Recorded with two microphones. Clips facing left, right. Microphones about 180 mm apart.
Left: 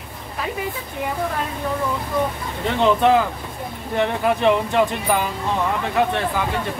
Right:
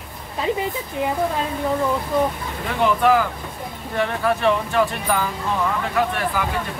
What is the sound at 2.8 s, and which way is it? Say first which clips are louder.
Speech: left 1 dB; 25° left (ahead or behind).